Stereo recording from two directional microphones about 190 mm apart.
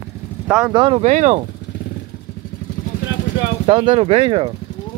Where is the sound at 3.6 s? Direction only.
25° right (ahead or behind).